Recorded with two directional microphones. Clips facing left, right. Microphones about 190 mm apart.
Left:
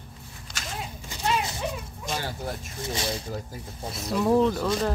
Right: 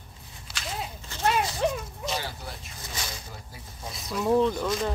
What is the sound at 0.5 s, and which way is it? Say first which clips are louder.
Horse: right 1 dB; 45° left (ahead or behind).